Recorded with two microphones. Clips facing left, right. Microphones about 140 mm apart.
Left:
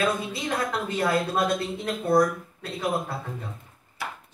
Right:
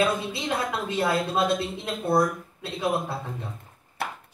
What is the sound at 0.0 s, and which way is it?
A woman's voice, 25° right (ahead or behind).